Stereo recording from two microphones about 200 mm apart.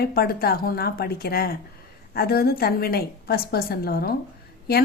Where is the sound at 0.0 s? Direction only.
50° left (ahead or behind).